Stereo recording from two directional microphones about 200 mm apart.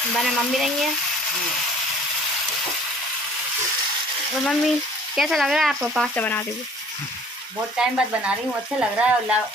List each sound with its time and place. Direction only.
4.5 s frying: centre (ahead or behind)
7.7 s frying: 5° right (ahead or behind)